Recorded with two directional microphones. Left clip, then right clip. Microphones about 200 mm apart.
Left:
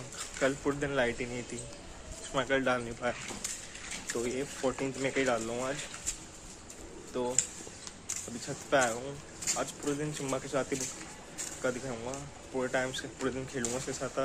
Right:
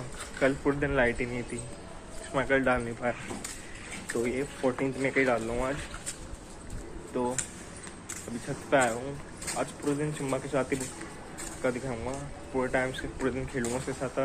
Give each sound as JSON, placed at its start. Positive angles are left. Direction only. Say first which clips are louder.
{"t": 0.4, "sound": "speech", "louder": "right 4 dB", "side_deg": 15}
{"t": 7.1, "sound": "speech", "louder": "right 3 dB", "side_deg": 15}
{"t": 8.6, "sound": "speech", "louder": "right 3 dB", "side_deg": 15}